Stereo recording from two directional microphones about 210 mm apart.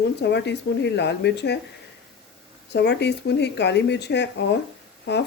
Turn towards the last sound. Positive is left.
turn(degrees=50)  # may be behind; listen again after turning